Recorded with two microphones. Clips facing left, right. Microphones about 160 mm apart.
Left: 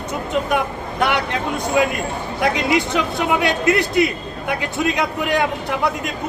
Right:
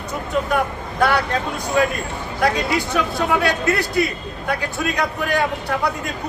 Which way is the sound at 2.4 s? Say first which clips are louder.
Left 1 dB; 20° left (ahead or behind).